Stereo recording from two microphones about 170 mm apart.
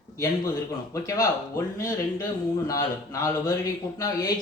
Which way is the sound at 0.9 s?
20° left (ahead or behind).